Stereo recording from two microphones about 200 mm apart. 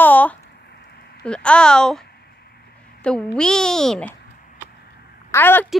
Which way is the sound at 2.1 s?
55° left (ahead or behind).